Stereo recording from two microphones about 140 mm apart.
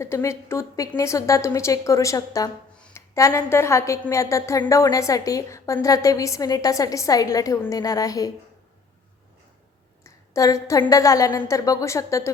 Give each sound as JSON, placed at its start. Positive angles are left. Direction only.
{"t": 0.0, "sound": "a woman's voice", "side_deg": 20}
{"t": 10.0, "sound": "a woman's voice", "side_deg": 25}